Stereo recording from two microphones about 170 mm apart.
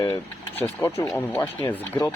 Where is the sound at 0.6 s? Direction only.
10° left (ahead or behind).